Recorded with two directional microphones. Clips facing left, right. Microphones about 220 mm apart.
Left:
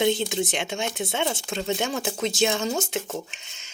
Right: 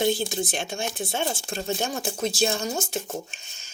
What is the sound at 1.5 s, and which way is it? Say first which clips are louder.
Speech: left 2 dB; 75° left (ahead or behind).